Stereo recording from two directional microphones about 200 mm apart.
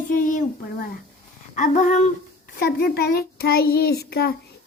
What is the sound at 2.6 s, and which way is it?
A woman's voice, 50° left (ahead or behind).